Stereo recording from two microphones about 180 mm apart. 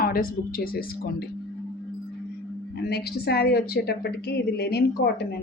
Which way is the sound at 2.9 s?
60° left (ahead or behind).